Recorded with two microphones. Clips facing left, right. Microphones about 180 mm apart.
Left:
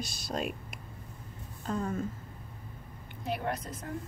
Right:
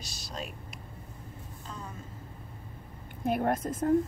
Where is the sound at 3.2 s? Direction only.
50° right (ahead or behind).